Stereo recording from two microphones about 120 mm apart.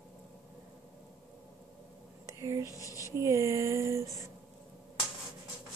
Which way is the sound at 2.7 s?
30° left (ahead or behind).